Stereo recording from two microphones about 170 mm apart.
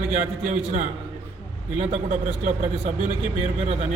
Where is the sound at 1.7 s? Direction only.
40° right (ahead or behind).